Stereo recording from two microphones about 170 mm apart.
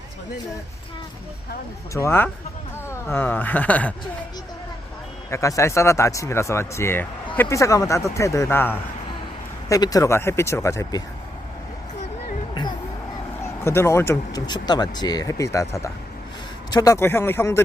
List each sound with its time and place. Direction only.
1.9 s speech: 15° left (ahead or behind)
5.3 s speech: 20° left (ahead or behind)
13.4 s speech: 15° left (ahead or behind)
16.7 s speech: 20° left (ahead or behind)